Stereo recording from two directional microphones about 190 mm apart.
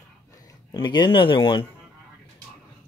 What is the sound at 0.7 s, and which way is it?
Speech, 25° left (ahead or behind).